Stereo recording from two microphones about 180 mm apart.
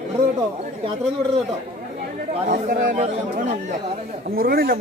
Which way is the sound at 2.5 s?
45° right (ahead or behind).